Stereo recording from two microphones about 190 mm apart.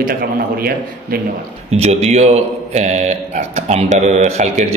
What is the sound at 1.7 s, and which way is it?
A man's voice, 35° right (ahead or behind).